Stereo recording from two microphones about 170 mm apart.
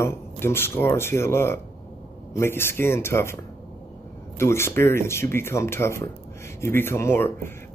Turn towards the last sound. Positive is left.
turn(degrees=15)  # may be behind; listen again after turning